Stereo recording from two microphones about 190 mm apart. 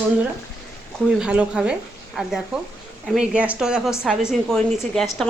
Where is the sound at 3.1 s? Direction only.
5° right (ahead or behind).